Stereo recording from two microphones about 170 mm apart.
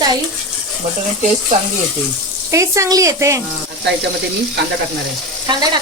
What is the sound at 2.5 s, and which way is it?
Speech, 20° right (ahead or behind).